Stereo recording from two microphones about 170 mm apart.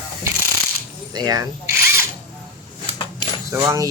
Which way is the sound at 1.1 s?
20° right (ahead or behind).